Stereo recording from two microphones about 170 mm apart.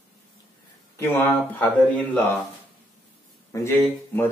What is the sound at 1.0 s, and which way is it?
Speech, 10° left (ahead or behind).